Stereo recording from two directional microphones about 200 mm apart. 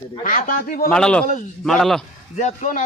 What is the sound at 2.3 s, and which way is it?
Speech, 40° left (ahead or behind).